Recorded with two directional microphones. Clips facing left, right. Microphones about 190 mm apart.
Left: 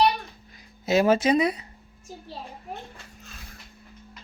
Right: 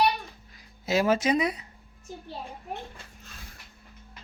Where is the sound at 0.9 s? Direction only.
25° left (ahead or behind).